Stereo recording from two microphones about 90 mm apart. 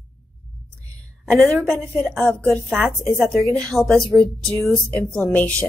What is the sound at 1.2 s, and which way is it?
A woman's voice, 10° left (ahead or behind).